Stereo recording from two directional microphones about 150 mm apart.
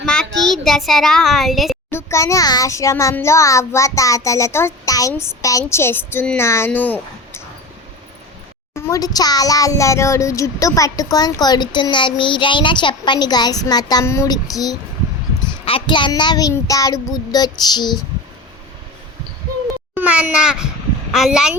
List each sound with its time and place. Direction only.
0.0 s a child's voice: 5° left (ahead or behind)
1.9 s speech: 15° left (ahead or behind)
8.7 s speech: 25° left (ahead or behind)
19.9 s a child's voice: 10° right (ahead or behind)